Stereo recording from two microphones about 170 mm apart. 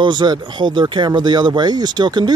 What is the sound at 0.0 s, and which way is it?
Speech, 25° right (ahead or behind).